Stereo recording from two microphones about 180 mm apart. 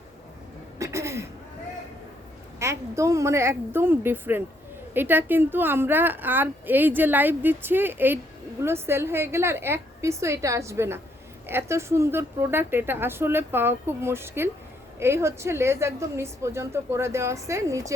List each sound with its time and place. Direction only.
0.8 s throat clearing: 15° right (ahead or behind)
2.6 s a woman's voice: 15° right (ahead or behind)